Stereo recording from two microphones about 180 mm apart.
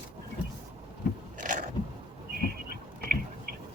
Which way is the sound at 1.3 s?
45° right (ahead or behind).